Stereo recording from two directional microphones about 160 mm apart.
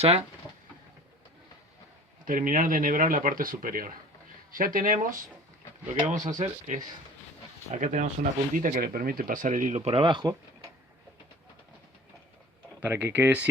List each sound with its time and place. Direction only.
0.0 s speech: 40° right (ahead or behind)
2.2 s speech: 55° right (ahead or behind)
8.5 s speech: 60° right (ahead or behind)
9.8 s speech: 35° right (ahead or behind)
12.8 s speech: 15° right (ahead or behind)